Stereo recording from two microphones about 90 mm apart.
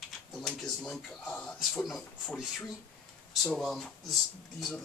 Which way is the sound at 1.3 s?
15° left (ahead or behind).